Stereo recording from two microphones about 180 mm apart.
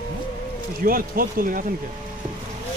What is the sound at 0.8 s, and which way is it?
Speech, 55° right (ahead or behind).